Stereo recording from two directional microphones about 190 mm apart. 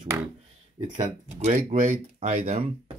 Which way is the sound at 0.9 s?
40° right (ahead or behind).